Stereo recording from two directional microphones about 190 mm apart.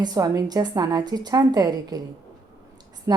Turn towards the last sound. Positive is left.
turn(degrees=-15)  # may be behind; listen again after turning